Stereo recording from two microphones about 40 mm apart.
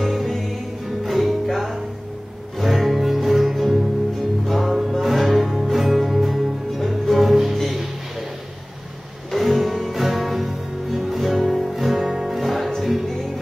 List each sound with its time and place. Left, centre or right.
0.0 s music: centre
9.3 s music: centre